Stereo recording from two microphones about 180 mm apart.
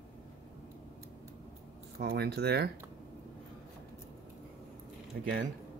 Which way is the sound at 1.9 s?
65° right (ahead or behind).